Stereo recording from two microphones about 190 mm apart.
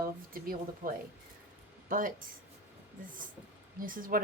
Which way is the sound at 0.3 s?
50° right (ahead or behind).